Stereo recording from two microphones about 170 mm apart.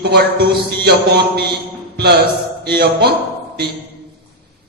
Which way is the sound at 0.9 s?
75° right (ahead or behind).